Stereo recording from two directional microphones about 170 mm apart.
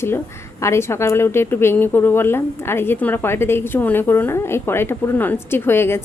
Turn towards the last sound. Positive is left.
turn(degrees=15)  # may be behind; listen again after turning